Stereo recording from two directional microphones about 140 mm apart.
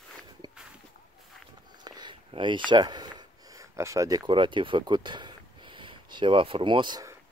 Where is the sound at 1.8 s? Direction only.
30° right (ahead or behind).